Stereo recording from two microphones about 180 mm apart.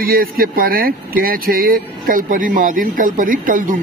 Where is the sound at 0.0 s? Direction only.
55° right (ahead or behind).